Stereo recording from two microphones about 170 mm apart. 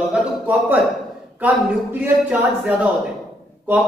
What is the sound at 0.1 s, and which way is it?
A man's voice, 5° right (ahead or behind).